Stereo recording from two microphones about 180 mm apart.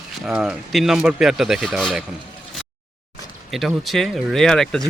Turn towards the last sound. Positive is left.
turn(degrees=5)  # may be behind; listen again after turning